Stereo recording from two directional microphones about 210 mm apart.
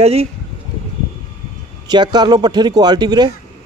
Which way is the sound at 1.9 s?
20° right (ahead or behind).